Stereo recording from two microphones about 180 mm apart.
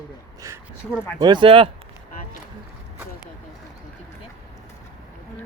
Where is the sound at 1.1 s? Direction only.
25° right (ahead or behind).